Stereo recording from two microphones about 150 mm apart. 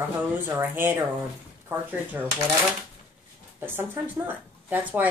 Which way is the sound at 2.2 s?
15° right (ahead or behind).